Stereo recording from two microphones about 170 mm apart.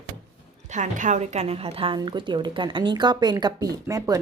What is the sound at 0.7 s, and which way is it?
A woman's voice, 45° right (ahead or behind).